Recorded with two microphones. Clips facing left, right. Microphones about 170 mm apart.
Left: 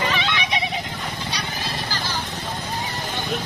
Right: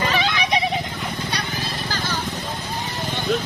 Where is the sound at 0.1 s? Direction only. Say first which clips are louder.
Right 3 dB; 35° right (ahead or behind).